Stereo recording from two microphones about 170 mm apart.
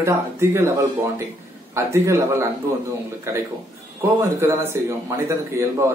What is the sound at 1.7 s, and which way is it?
A man's voice, 15° right (ahead or behind).